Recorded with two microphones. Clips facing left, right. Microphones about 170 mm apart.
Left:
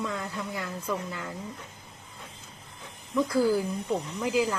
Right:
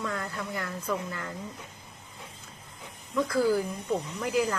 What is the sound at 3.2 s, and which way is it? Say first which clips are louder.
Speech: even; 15° left (ahead or behind).